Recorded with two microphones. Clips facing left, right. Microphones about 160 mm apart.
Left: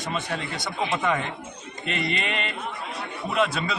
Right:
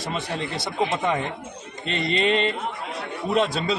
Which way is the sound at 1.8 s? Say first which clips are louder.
Right 5 dB; 30° right (ahead or behind).